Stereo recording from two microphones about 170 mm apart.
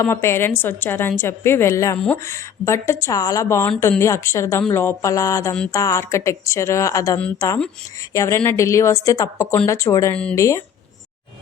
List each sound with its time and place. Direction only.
0.0 s a woman's voice: 15° left (ahead or behind)